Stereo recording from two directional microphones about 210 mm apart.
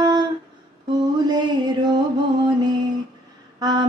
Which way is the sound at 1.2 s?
20° right (ahead or behind).